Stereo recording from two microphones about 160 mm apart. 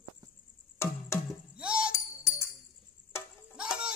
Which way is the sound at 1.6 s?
5° right (ahead or behind).